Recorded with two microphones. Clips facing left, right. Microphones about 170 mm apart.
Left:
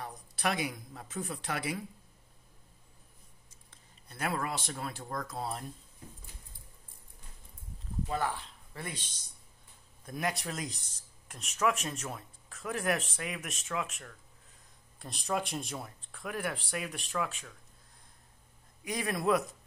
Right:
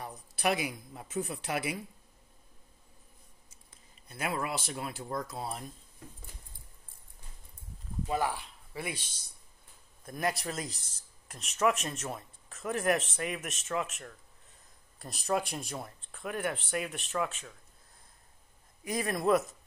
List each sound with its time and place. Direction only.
0.0 s a man's voice: 10° right (ahead or behind)
4.1 s speech: 10° right (ahead or behind)
8.1 s speech: 10° right (ahead or behind)
18.9 s speech: centre (ahead or behind)